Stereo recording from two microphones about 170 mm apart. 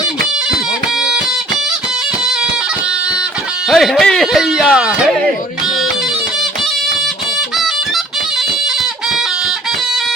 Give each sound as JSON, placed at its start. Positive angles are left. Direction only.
{"t": 3.7, "sound": "music", "side_deg": 0}
{"t": 7.5, "sound": "music", "side_deg": 0}